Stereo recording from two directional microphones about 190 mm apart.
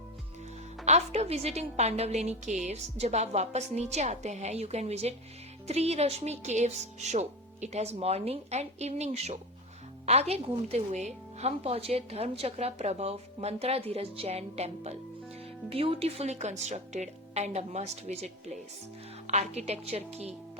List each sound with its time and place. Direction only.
0.9 s a woman's voice: 35° right (ahead or behind)